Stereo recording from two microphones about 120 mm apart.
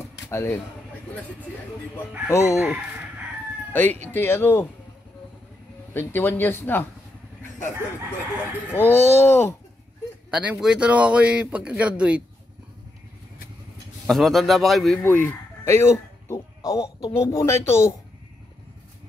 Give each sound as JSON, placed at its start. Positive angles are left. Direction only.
{"t": 0.3, "sound": "speech", "side_deg": 25}
{"t": 2.2, "sound": "speech", "side_deg": 25}
{"t": 3.7, "sound": "speech", "side_deg": 15}
{"t": 5.9, "sound": "speech", "side_deg": 20}
{"t": 8.7, "sound": "speech", "side_deg": 15}
{"t": 10.3, "sound": "a man's voice", "side_deg": -10}
{"t": 14.0, "sound": "a man's voice", "side_deg": 0}
{"t": 15.0, "sound": "speech", "side_deg": 20}